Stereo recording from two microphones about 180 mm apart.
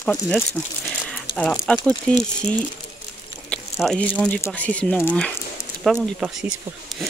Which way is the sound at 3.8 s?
Centre (ahead or behind).